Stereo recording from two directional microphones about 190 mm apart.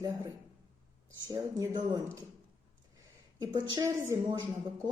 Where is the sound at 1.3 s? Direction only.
20° right (ahead or behind).